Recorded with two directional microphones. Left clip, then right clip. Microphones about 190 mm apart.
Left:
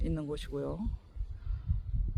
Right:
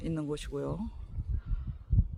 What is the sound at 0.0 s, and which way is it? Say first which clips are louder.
Speech: right 2 dB; 5° left (ahead or behind).